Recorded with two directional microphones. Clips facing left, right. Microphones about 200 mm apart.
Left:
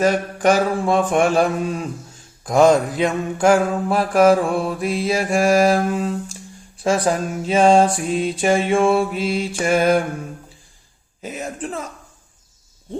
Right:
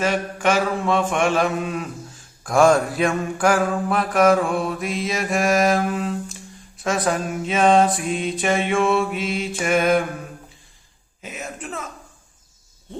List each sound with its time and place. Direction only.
0.0 s mantra: 40° left (ahead or behind)
2.4 s mantra: 20° left (ahead or behind)
11.2 s mantra: 35° left (ahead or behind)